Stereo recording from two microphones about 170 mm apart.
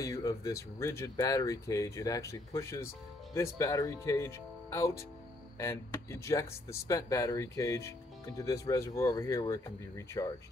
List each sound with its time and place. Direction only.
0.0 s speech: 20° left (ahead or behind)